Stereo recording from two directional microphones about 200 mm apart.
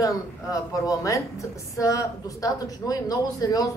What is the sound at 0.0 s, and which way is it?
A woman's voice, 15° left (ahead or behind).